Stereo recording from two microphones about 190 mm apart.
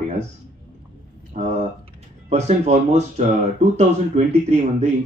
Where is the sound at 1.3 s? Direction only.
35° right (ahead or behind).